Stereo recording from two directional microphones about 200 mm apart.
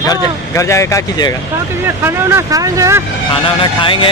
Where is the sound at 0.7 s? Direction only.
15° left (ahead or behind).